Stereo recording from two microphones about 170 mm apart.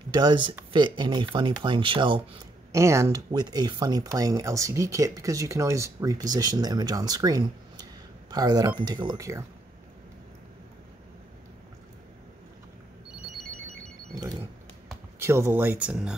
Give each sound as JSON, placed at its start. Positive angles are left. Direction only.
{"t": 0.1, "sound": "speech", "side_deg": -25}
{"t": 2.7, "sound": "speech", "side_deg": -15}
{"t": 14.1, "sound": "a sound", "side_deg": -20}
{"t": 15.1, "sound": "speech", "side_deg": -15}